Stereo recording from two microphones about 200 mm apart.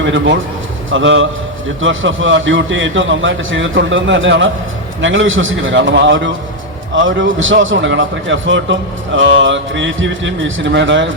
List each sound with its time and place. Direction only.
0.0 s a man's voice: 65° right (ahead or behind)